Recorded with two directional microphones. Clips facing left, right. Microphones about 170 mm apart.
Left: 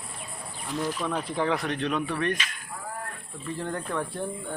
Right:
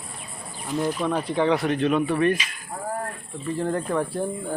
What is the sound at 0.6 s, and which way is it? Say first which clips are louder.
Speech: right 5 dB; centre (ahead or behind).